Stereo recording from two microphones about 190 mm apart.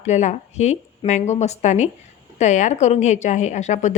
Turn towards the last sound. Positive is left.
turn(degrees=40)  # may be behind; listen again after turning